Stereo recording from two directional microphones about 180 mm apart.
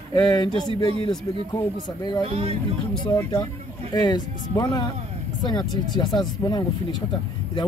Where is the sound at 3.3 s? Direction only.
25° left (ahead or behind).